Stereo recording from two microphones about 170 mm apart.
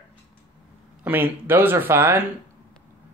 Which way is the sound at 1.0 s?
10° right (ahead or behind).